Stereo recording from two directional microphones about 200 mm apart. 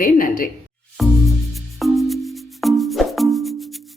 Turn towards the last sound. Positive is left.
turn(degrees=0)  # may be behind; listen again after turning